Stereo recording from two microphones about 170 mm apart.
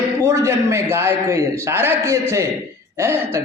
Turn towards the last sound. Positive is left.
turn(degrees=-15)  # may be behind; listen again after turning